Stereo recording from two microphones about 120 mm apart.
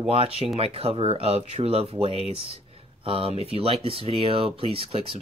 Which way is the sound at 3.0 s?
50° right (ahead or behind).